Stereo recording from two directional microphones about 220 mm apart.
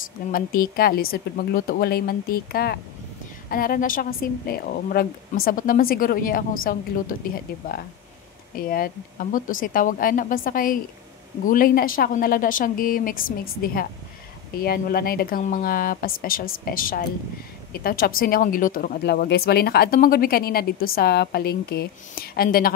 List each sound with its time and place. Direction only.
0.3 s a woman's voice: 40° left (ahead or behind)
8.5 s a woman's voice: 40° left (ahead or behind)